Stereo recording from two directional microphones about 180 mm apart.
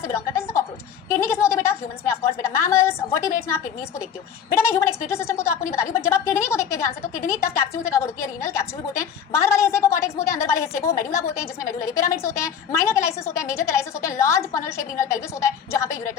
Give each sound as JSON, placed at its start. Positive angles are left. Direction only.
{"t": 0.0, "sound": "a woman's voice", "side_deg": 15}
{"t": 1.2, "sound": "a sound", "side_deg": 15}
{"t": 2.4, "sound": "a woman's voice", "side_deg": 15}
{"t": 4.5, "sound": "a woman's voice", "side_deg": 15}